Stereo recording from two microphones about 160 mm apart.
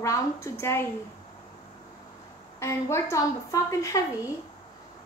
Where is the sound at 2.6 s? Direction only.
15° left (ahead or behind).